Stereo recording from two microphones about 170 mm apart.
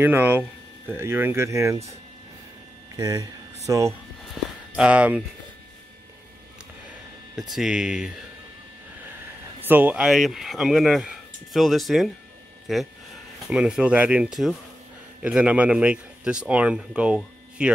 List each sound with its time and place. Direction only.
0.0 s speech: 10° right (ahead or behind)
3.0 s hum: 20° right (ahead or behind)
4.4 s speech: centre (ahead or behind)
6.9 s speech: 5° right (ahead or behind)
9.6 s speech: 10° right (ahead or behind)